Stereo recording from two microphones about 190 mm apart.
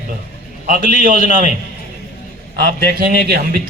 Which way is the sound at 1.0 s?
45° right (ahead or behind).